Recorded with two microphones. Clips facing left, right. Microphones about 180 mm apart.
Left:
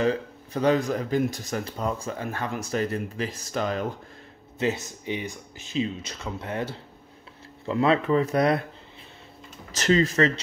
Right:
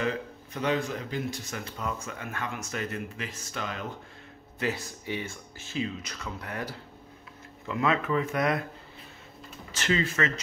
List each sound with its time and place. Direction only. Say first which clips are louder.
0.0 s speech: left 6 dB; 35° left (ahead or behind)
4.6 s speech: left 5 dB; 25° left (ahead or behind)
9.7 s speech: left 6 dB; 40° left (ahead or behind)